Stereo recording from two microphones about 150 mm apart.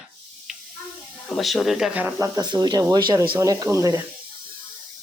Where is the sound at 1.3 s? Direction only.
Centre (ahead or behind).